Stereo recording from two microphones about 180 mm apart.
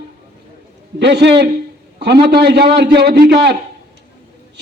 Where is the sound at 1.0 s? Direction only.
70° right (ahead or behind).